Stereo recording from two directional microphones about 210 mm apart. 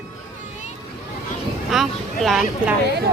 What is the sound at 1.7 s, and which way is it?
Speech, centre (ahead or behind).